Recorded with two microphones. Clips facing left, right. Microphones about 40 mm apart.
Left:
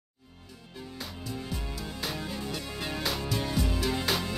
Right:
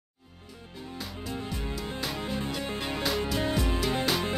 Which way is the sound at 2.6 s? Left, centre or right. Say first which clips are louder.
Right 3 dB; right.